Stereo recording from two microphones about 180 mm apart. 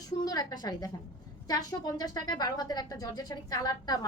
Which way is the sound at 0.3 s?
20° left (ahead or behind).